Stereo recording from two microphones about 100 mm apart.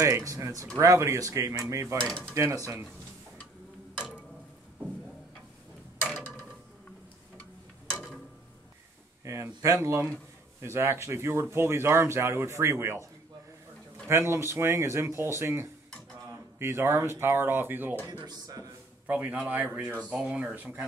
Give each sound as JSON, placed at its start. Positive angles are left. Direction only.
{"t": 0.0, "sound": "speech", "side_deg": -30}
{"t": 2.0, "sound": "speech", "side_deg": 10}
{"t": 2.3, "sound": "speech", "side_deg": -30}
{"t": 9.2, "sound": "speech", "side_deg": -30}
{"t": 14.0, "sound": "speech", "side_deg": -25}
{"t": 18.0, "sound": "speech", "side_deg": -40}
{"t": 19.0, "sound": "speech", "side_deg": -15}
{"t": 20.5, "sound": "speech", "side_deg": -20}